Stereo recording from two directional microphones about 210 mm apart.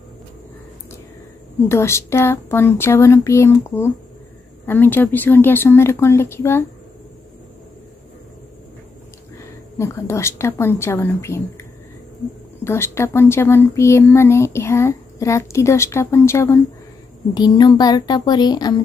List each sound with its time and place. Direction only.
1.7 s speech: 10° left (ahead or behind)
9.4 s speech: 15° left (ahead or behind)
12.6 s speech: 10° left (ahead or behind)